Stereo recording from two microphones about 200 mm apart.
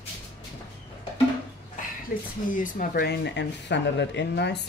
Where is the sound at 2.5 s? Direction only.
45° left (ahead or behind).